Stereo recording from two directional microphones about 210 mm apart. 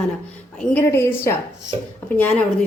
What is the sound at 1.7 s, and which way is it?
Speech, 25° right (ahead or behind).